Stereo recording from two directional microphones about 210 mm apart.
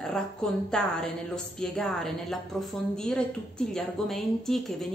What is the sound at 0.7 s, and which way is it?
Speech, 5° left (ahead or behind).